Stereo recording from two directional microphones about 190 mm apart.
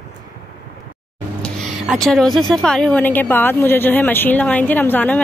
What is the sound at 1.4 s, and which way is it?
Speech, centre (ahead or behind).